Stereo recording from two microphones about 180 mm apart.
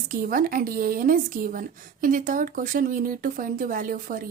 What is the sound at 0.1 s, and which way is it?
A woman's voice, 50° right (ahead or behind).